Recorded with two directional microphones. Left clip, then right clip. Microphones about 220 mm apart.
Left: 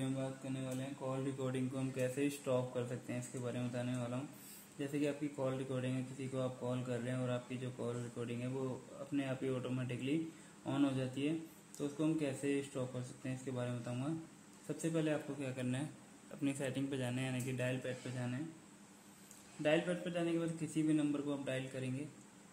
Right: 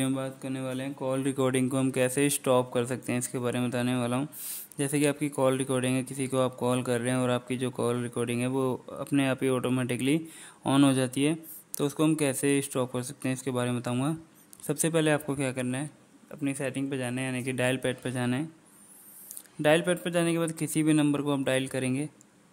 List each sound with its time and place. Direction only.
0.0 s a man's voice: 50° right (ahead or behind)
19.6 s speech: 45° right (ahead or behind)